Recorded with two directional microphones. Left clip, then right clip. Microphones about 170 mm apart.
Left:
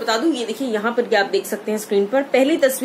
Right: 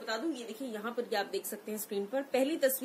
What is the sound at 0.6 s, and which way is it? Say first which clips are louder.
Speech: left 17 dB; 5° right (ahead or behind).